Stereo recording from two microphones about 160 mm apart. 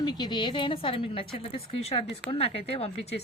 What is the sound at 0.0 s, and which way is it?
Speech, 25° left (ahead or behind).